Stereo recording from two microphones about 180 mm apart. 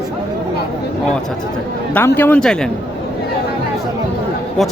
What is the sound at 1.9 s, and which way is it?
Speech, 10° left (ahead or behind).